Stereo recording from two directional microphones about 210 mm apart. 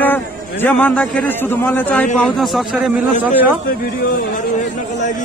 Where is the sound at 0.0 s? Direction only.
10° left (ahead or behind).